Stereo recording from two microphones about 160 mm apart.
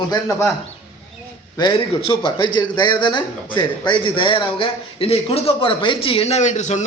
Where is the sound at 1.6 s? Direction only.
25° left (ahead or behind).